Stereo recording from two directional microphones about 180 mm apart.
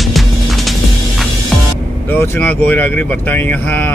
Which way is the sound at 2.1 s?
10° left (ahead or behind).